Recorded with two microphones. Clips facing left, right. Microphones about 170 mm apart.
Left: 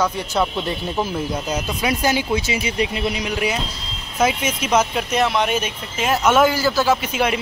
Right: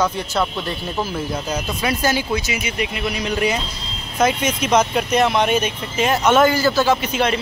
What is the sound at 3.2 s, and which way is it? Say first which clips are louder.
Speech: right 2 dB; 5° left (ahead or behind).